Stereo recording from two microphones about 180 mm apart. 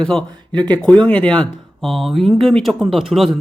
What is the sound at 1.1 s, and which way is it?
Speech, 5° left (ahead or behind).